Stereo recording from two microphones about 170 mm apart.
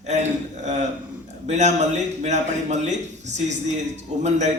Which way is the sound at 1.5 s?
45° right (ahead or behind).